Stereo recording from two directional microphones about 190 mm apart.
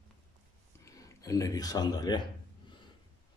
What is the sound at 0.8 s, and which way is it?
Speech, 15° left (ahead or behind).